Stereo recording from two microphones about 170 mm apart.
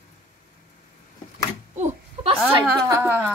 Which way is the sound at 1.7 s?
40° right (ahead or behind).